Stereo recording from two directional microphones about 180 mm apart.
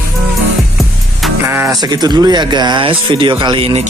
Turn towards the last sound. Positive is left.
turn(degrees=-30)  # may be behind; listen again after turning